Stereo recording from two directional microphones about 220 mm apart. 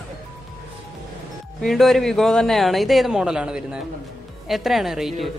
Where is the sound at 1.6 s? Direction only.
Centre (ahead or behind).